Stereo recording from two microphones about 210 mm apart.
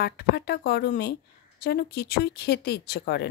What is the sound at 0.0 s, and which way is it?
Speech, 50° left (ahead or behind).